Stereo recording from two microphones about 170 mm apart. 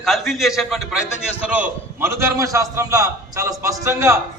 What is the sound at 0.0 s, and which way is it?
A man's voice, centre (ahead or behind).